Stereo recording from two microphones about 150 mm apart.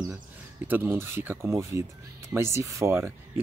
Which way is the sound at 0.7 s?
15° right (ahead or behind).